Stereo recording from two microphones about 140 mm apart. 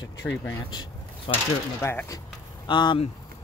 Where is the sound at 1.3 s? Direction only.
40° left (ahead or behind).